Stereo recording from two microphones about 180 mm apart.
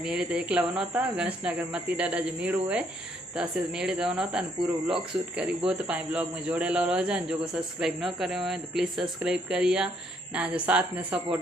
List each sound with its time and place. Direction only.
0.0 s a man's voice: 5° right (ahead or behind)
4.9 s speech: 30° right (ahead or behind)
5.4 s a man's voice: 5° right (ahead or behind)